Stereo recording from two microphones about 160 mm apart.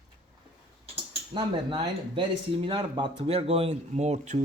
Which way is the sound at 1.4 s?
30° right (ahead or behind).